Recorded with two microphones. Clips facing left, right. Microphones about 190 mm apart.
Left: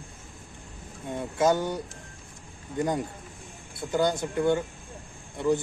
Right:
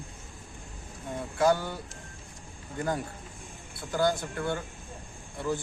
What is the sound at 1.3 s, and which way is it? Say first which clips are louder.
Speech: left 1 dB; 20° left (ahead or behind).